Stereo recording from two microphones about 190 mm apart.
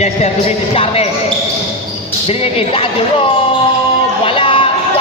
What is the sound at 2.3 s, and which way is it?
Speech, 30° left (ahead or behind).